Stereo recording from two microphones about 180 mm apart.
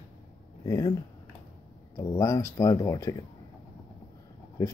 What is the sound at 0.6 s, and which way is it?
Speech, 20° left (ahead or behind).